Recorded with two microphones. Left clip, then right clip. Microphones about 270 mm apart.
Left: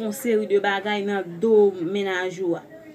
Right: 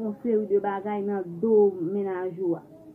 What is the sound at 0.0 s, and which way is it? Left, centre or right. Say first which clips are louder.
A woman's voice: left 3 dB; left.